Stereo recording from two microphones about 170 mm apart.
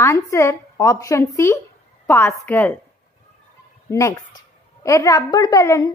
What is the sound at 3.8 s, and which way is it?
A woman's voice, 15° left (ahead or behind).